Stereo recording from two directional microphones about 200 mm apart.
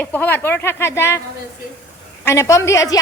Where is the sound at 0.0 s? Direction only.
10° left (ahead or behind).